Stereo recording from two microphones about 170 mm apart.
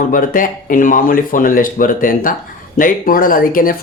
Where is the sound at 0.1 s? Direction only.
50° left (ahead or behind).